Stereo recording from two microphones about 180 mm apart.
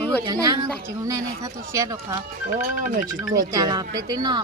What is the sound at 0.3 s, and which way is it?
Speech, 20° right (ahead or behind).